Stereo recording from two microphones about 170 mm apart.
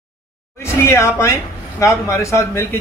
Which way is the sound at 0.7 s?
15° left (ahead or behind).